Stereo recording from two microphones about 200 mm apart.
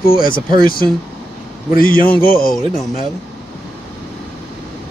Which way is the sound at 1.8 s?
45° left (ahead or behind).